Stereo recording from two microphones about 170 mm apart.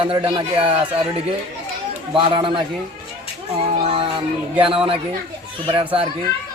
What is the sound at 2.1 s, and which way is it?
Speech, 30° right (ahead or behind).